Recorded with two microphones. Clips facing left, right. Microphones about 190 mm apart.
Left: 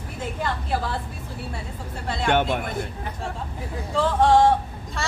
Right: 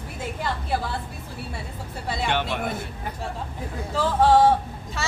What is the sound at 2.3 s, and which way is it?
Speech, 50° left (ahead or behind).